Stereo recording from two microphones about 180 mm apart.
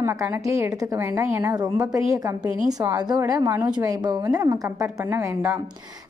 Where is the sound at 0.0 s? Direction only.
15° right (ahead or behind).